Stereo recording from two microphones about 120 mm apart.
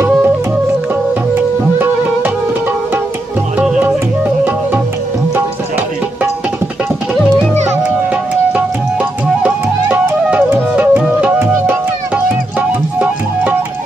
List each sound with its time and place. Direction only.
1.3 s music: 15° right (ahead or behind)
3.5 s music: 10° right (ahead or behind)
9.4 s music: 15° right (ahead or behind)